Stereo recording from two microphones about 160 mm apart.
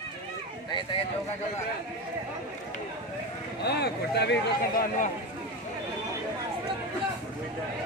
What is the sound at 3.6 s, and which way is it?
Speech, 90° left.